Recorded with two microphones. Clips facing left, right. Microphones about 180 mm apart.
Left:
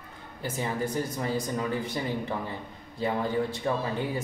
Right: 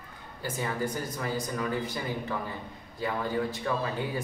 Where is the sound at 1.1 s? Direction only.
25° left (ahead or behind).